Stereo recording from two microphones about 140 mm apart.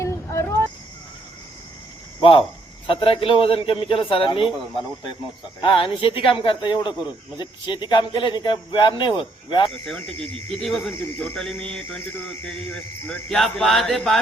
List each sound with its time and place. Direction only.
0.0 s a sound: 20° left (ahead or behind)
2.8 s speech: 40° left (ahead or behind)
5.5 s speech: 35° left (ahead or behind)
9.6 s speech: 5° left (ahead or behind)
11.0 s speech: 15° left (ahead or behind)